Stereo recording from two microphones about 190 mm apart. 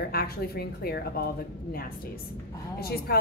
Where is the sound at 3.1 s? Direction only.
55° left (ahead or behind).